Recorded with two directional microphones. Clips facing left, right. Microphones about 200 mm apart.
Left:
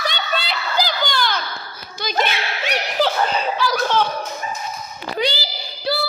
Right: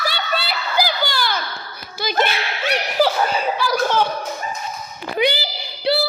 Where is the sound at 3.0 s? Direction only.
10° right (ahead or behind).